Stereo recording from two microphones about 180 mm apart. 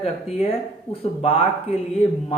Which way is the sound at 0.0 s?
35° left (ahead or behind).